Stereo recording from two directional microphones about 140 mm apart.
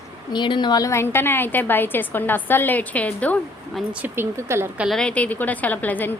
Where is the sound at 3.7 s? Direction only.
10° right (ahead or behind).